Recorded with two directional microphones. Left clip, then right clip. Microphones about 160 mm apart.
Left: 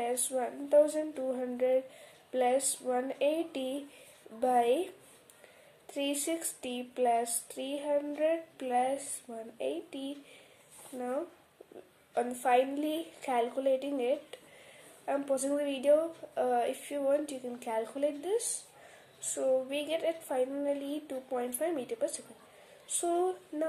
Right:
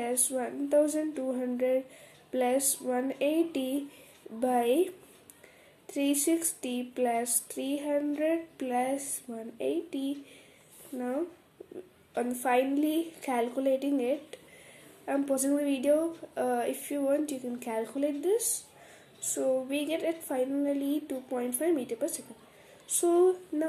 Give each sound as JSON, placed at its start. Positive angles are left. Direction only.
{"t": 0.0, "sound": "speech", "side_deg": -20}
{"t": 12.1, "sound": "a woman's voice", "side_deg": -20}